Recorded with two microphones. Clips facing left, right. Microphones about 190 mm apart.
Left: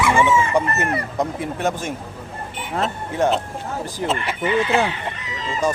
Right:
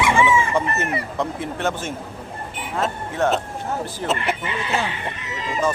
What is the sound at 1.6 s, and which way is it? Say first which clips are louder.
Speech: left 1 dB; 15° left (ahead or behind).